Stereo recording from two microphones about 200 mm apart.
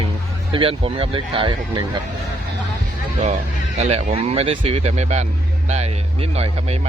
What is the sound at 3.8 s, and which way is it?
Speech, 30° right (ahead or behind).